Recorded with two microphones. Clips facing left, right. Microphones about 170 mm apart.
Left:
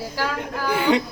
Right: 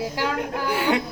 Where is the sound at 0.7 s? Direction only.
5° right (ahead or behind).